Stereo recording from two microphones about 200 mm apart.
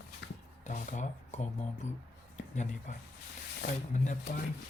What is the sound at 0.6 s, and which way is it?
Speech, 35° left (ahead or behind).